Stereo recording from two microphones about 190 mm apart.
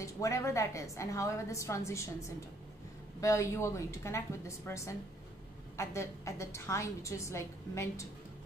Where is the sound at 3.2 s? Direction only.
15° left (ahead or behind).